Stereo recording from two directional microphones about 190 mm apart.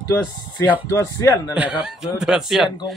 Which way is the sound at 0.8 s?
15° left (ahead or behind).